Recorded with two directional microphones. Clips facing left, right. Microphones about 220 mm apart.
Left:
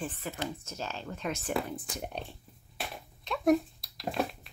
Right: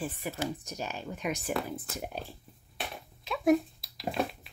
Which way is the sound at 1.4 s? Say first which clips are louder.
Even; centre (ahead or behind).